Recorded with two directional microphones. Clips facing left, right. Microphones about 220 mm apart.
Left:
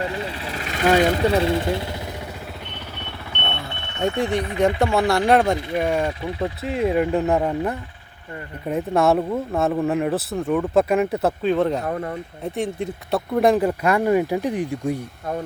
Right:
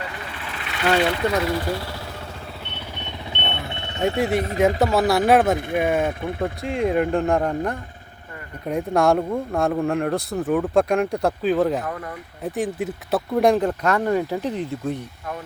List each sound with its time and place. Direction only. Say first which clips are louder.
0.0 s vehicle: left 7 dB; 25° left (ahead or behind); by 0.9 s 40° left (ahead or behind)
0.9 s speech: left 3 dB; 45° left (ahead or behind)
1.3 s speech: left 3 dB; 25° left (ahead or behind)
3.3 s vehicle: even; 20° right (ahead or behind)
4.9 s speech: even; 5° right (ahead or behind)
5.5 s speech: right 1 dB; 55° right (ahead or behind)
6.4 s speech: left 1 dB; 5° left (ahead or behind)
11.9 s speech: left 5 dB; 30° left (ahead or behind)
12.4 s speech: right 2 dB; 5° right (ahead or behind); by 14.9 s 15° left (ahead or behind)